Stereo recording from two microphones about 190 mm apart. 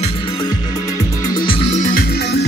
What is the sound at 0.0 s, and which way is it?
Music, 30° left (ahead or behind).